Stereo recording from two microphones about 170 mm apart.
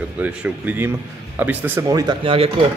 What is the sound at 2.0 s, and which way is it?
Speech, 30° right (ahead or behind).